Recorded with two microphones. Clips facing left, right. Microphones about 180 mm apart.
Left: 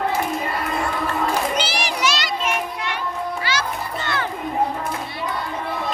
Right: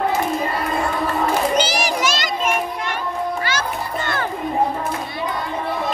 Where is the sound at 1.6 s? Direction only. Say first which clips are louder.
Right 4 dB; 45° right (ahead or behind).